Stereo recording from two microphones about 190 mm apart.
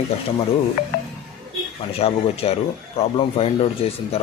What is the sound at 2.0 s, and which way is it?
A man's voice, 30° left (ahead or behind).